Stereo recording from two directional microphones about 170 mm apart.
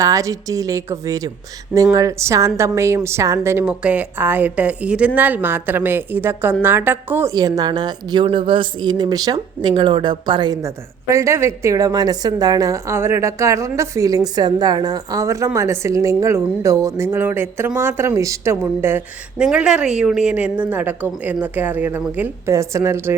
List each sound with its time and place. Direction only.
0.0 s a woman's voice: 20° right (ahead or behind)